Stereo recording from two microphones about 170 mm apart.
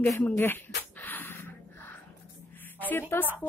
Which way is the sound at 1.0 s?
10° left (ahead or behind).